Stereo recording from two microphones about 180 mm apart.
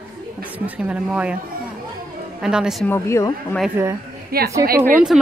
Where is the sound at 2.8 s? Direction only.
15° left (ahead or behind).